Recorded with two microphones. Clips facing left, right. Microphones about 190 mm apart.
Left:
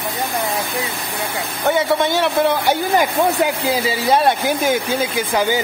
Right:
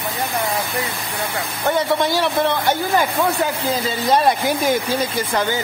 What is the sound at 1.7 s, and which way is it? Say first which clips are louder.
Speech: left 2 dB; centre (ahead or behind).